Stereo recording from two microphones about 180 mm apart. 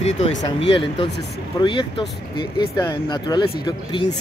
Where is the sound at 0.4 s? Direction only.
30° left (ahead or behind).